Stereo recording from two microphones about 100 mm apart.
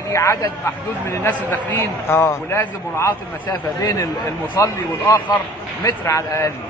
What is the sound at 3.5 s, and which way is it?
A man's voice, 35° left (ahead or behind).